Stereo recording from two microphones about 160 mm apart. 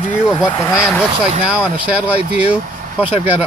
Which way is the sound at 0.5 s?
20° left (ahead or behind).